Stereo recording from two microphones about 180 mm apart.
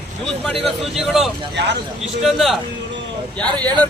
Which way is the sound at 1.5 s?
70° right (ahead or behind).